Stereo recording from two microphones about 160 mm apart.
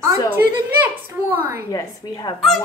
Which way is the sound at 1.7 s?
25° left (ahead or behind).